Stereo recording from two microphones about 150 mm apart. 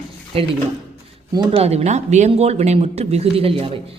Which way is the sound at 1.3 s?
30° right (ahead or behind).